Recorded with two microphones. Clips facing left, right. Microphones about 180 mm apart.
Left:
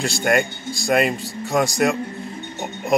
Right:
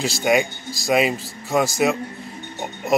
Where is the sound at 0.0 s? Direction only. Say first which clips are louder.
Right 1 dB; centre (ahead or behind).